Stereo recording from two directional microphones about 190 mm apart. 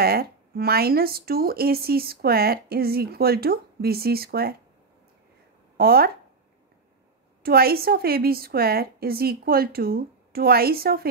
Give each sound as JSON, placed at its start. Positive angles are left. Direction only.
{"t": 0.0, "sound": "speech", "side_deg": -55}
{"t": 5.8, "sound": "speech", "side_deg": -55}
{"t": 7.4, "sound": "speech", "side_deg": -55}